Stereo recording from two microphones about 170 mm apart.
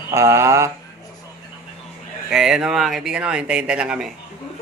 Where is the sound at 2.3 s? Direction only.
5° right (ahead or behind).